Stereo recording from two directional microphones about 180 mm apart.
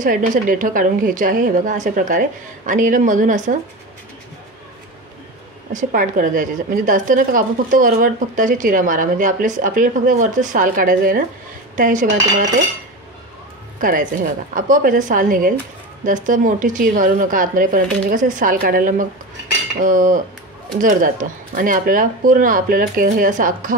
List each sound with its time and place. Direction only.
0.0 s a woman's voice: 45° right (ahead or behind)
5.7 s a woman's voice: 45° right (ahead or behind)
13.7 s a woman's voice: 50° right (ahead or behind)